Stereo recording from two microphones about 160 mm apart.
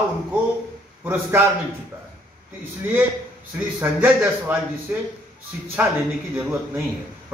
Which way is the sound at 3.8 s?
10° right (ahead or behind).